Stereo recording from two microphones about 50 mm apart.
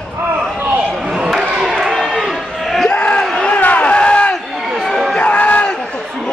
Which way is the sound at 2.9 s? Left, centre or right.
Centre.